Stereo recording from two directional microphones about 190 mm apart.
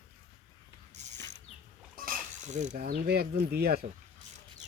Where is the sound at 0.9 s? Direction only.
40° right (ahead or behind).